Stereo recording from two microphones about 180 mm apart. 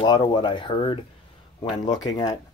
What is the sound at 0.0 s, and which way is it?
Speech, 20° left (ahead or behind).